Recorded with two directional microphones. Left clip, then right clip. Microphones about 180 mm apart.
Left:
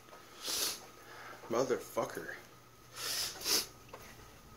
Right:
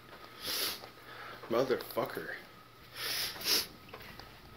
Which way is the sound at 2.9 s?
10° left (ahead or behind).